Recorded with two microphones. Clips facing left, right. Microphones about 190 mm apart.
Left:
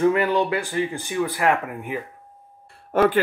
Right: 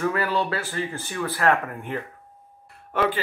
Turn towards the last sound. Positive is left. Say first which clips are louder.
# left 6 dB
turn(degrees=50)  # may be behind; listen again after turning